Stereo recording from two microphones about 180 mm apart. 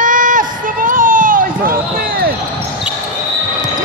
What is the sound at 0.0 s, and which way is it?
Run, 45° right (ahead or behind).